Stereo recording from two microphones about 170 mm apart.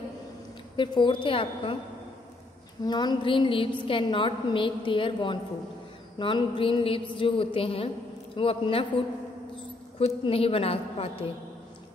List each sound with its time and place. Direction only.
0.7 s a woman's voice: 30° left (ahead or behind)
2.8 s a woman's voice: 25° left (ahead or behind)